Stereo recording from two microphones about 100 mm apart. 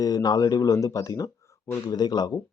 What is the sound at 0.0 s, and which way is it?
Speech, 40° left (ahead or behind).